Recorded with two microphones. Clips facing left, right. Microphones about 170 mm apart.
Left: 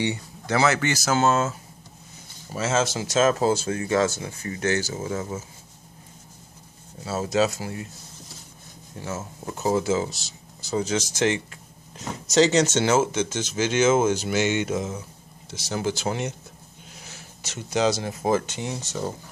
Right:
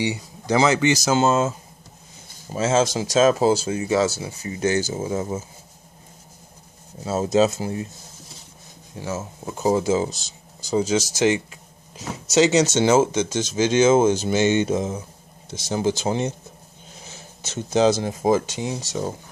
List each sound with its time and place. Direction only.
0.1 s speech: 15° right (ahead or behind)
2.5 s speech: 15° right (ahead or behind)
7.1 s speech: 20° right (ahead or behind)
9.0 s speech: 15° right (ahead or behind)